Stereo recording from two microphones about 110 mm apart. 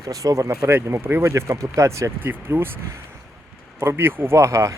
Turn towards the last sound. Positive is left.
turn(degrees=-30)  # may be behind; listen again after turning